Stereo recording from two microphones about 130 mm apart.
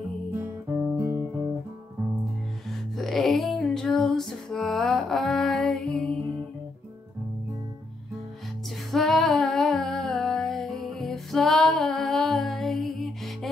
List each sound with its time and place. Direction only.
0.4 s guitar: 10° right (ahead or behind)
0.9 s music: 15° right (ahead or behind)
2.7 s music: centre (ahead or behind)
8.9 s humming: centre (ahead or behind)